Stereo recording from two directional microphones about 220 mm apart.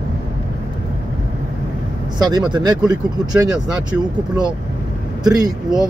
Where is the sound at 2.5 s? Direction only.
20° right (ahead or behind).